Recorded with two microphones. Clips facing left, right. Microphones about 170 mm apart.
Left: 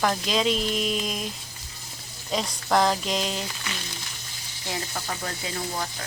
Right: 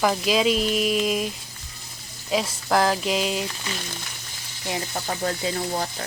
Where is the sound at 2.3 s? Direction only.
5° right (ahead or behind).